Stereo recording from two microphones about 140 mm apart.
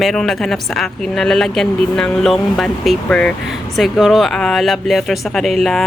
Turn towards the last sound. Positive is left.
turn(degrees=0)  # may be behind; listen again after turning